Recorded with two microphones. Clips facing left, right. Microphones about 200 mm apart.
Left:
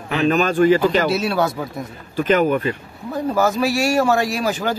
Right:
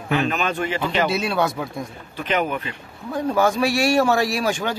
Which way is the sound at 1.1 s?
5° left (ahead or behind).